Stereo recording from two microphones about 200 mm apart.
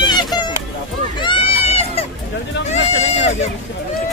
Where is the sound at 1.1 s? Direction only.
25° left (ahead or behind).